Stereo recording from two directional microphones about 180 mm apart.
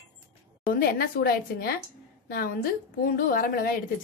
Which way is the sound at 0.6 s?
55° left (ahead or behind).